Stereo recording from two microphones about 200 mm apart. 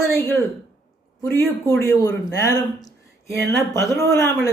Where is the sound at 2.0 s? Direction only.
20° left (ahead or behind).